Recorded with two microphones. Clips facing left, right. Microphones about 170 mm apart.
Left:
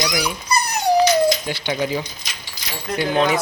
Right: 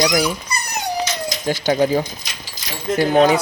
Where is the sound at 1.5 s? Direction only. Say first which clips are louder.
Right 6 dB; 45° right (ahead or behind).